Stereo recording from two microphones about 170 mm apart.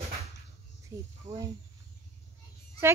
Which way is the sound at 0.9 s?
20° right (ahead or behind).